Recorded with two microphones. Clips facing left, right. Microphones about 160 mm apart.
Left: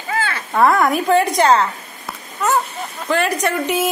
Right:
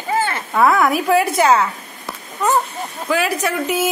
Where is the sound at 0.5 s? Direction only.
Centre (ahead or behind).